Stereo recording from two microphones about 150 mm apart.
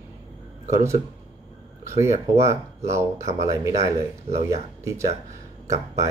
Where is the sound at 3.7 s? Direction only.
45° right (ahead or behind).